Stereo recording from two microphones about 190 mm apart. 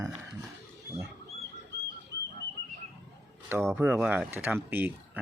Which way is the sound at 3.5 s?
10° right (ahead or behind).